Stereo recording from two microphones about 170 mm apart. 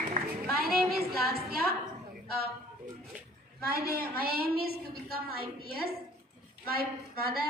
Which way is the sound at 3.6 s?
65° right (ahead or behind).